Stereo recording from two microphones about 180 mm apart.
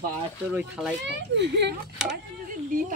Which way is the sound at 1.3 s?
70° right (ahead or behind).